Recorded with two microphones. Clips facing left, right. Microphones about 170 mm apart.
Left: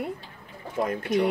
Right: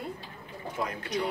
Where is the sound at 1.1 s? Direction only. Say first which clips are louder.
Left 8 dB; 50° left (ahead or behind).